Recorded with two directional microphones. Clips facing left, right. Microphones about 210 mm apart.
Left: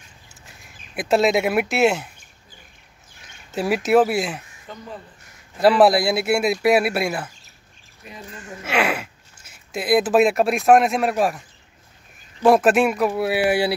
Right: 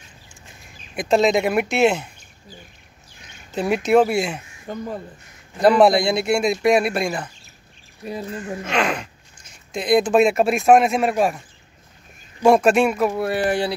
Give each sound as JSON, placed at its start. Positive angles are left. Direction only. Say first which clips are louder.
{"t": 0.9, "sound": "speech", "louder": "right 1 dB", "side_deg": 5}
{"t": 3.5, "sound": "speech", "louder": "right 1 dB", "side_deg": 5}
{"t": 4.7, "sound": "speech", "louder": "right 9 dB", "side_deg": -45}
{"t": 5.6, "sound": "speech", "louder": "right 1 dB", "side_deg": 5}
{"t": 8.0, "sound": "speech", "louder": "right 10 dB", "side_deg": -35}
{"t": 8.6, "sound": "speech", "louder": "left 2 dB", "side_deg": 5}
{"t": 12.4, "sound": "speech", "louder": "right 1 dB", "side_deg": 0}